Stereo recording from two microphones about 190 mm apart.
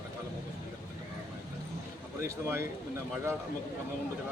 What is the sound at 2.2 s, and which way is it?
Speech, 15° right (ahead or behind).